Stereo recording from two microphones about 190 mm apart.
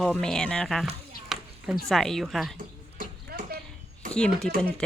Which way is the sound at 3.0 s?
50° right (ahead or behind).